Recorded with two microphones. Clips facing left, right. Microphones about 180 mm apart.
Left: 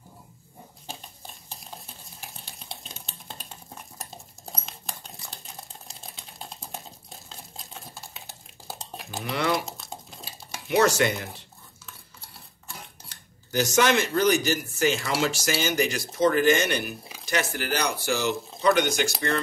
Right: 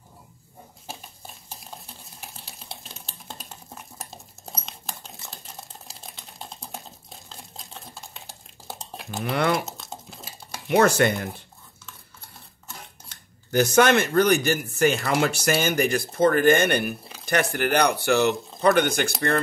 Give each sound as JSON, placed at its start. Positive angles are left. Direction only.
{"t": 2.1, "sound": "typing", "side_deg": 0}
{"t": 9.2, "sound": "speech", "side_deg": -55}
{"t": 9.7, "sound": "crumpling", "side_deg": 0}
{"t": 10.7, "sound": "speech", "side_deg": -55}
{"t": 13.5, "sound": "speech", "side_deg": -55}